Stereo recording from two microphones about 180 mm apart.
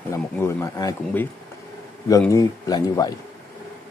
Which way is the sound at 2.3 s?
20° left (ahead or behind).